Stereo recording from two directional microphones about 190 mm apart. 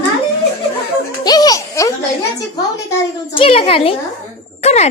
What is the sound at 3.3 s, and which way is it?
A child's voice, 30° left (ahead or behind).